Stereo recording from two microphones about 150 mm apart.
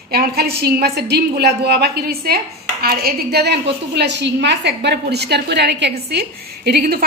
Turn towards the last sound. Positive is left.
turn(degrees=-90)